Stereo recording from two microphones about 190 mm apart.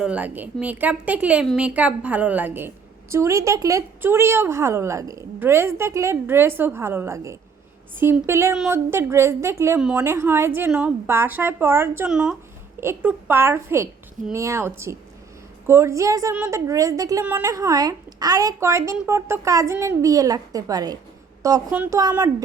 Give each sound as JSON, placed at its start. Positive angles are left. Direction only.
{"t": 0.0, "sound": "a woman's voice", "side_deg": -5}
{"t": 16.3, "sound": "a woman's voice", "side_deg": -5}
{"t": 16.6, "sound": "a woman's voice", "side_deg": -15}